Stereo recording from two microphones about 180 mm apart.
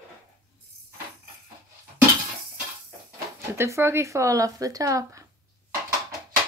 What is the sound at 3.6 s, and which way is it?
Speech, 15° right (ahead or behind).